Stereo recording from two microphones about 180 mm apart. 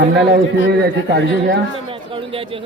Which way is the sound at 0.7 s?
70° right (ahead or behind).